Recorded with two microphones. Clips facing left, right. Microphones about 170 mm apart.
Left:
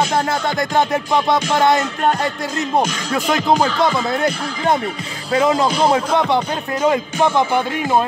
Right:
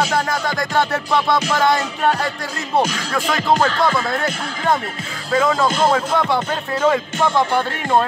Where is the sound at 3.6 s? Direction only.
Centre (ahead or behind).